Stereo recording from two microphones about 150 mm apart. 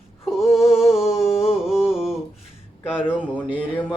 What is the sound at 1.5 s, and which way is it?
Music, 5° right (ahead or behind).